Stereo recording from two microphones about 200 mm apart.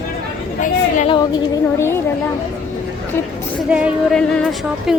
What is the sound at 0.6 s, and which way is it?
Speech, 40° left (ahead or behind).